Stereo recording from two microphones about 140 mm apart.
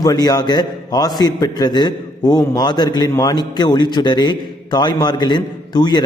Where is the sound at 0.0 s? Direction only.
25° left (ahead or behind).